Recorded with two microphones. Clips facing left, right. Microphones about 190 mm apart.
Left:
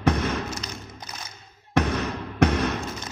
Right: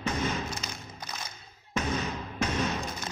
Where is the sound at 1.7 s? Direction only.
65° left (ahead or behind).